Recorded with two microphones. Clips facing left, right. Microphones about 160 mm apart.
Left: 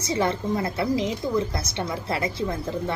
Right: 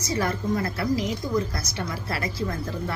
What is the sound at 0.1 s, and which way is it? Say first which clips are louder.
A woman's voice: left 2 dB; 25° left (ahead or behind).